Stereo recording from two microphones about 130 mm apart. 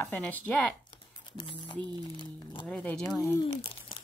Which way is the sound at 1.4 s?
35° left (ahead or behind).